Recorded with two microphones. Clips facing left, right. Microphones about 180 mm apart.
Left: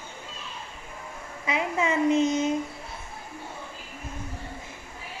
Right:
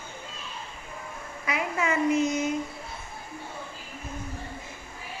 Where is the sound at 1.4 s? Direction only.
25° left (ahead or behind).